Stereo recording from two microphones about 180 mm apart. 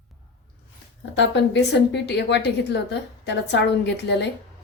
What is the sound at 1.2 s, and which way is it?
A woman's voice, 75° left (ahead or behind).